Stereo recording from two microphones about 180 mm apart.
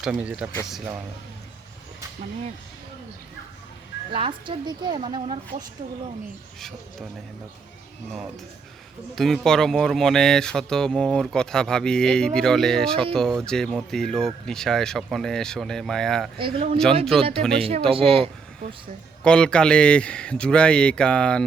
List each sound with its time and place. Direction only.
0.0 s speech: 5° right (ahead or behind)
4.1 s speech: 30° right (ahead or behind)
9.1 s speech: centre (ahead or behind)
16.4 s speech: 30° right (ahead or behind)
17.1 s speech: centre (ahead or behind)
17.9 s speech: 30° right (ahead or behind)
19.2 s speech: 5° left (ahead or behind)